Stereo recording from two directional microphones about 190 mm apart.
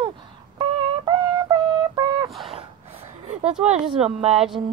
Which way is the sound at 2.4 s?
30° right (ahead or behind).